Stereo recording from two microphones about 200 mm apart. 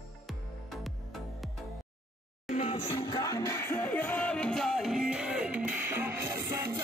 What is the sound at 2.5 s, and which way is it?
Music, 30° left (ahead or behind).